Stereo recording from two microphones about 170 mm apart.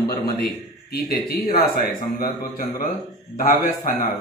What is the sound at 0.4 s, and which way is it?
A man's voice, 65° left (ahead or behind).